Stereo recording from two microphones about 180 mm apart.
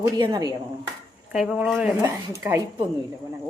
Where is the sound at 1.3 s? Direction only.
5° right (ahead or behind).